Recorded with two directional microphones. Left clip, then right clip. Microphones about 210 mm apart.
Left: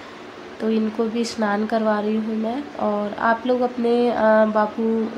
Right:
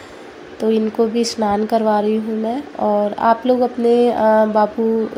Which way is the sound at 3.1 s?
15° right (ahead or behind).